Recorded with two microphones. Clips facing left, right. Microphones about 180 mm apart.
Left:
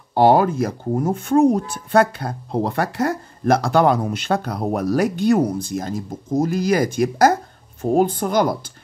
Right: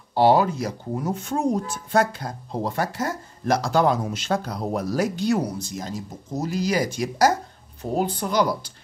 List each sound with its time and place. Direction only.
0.1 s speech: 55° left (ahead or behind)